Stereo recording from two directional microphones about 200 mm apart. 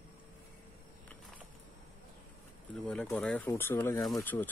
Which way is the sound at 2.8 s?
5° left (ahead or behind).